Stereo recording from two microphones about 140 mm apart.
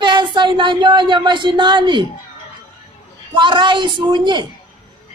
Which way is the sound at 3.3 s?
35° right (ahead or behind).